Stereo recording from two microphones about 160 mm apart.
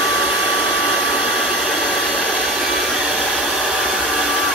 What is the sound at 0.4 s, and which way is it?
Hair dryer, 5° right (ahead or behind).